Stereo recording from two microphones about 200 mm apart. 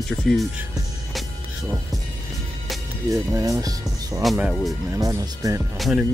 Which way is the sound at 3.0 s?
15° right (ahead or behind).